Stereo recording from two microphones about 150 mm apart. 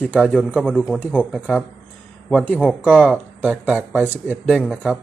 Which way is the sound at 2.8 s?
5° left (ahead or behind).